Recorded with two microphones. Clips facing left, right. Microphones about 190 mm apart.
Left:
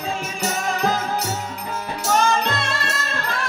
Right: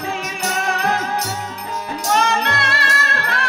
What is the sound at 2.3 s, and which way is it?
Music, 65° right (ahead or behind).